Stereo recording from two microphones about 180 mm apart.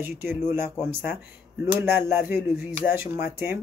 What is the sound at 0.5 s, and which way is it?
Speech, 15° right (ahead or behind).